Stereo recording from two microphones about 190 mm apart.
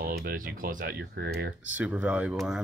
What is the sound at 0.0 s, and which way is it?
Speech, 50° right (ahead or behind).